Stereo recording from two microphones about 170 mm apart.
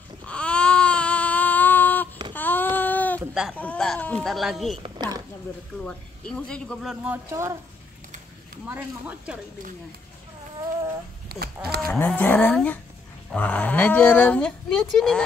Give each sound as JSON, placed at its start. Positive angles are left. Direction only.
{"t": 0.3, "sound": "baby cry", "side_deg": 5}
{"t": 2.3, "sound": "child singing", "side_deg": 10}
{"t": 3.2, "sound": "a sound", "side_deg": -5}
{"t": 3.5, "sound": "speech", "side_deg": 5}
{"t": 4.8, "sound": "speech", "side_deg": -25}
{"t": 5.9, "sound": "speech", "side_deg": 5}
{"t": 7.2, "sound": "speech", "side_deg": -15}
{"t": 8.6, "sound": "speech", "side_deg": -10}
{"t": 11.2, "sound": "a sound", "side_deg": -65}
{"t": 11.9, "sound": "speech", "side_deg": 10}